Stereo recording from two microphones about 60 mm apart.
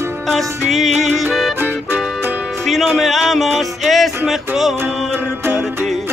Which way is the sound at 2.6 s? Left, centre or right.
Centre.